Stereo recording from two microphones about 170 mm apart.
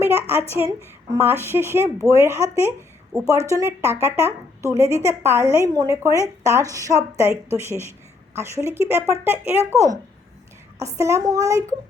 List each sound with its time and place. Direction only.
0.0 s a sound: 15° right (ahead or behind)
0.5 s speech: 15° right (ahead or behind)
10.8 s speech: 15° right (ahead or behind)